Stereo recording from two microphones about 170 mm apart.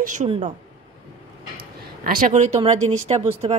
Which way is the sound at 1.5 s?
55° right (ahead or behind).